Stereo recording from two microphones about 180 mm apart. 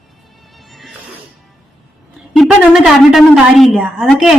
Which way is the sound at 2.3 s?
Centre (ahead or behind).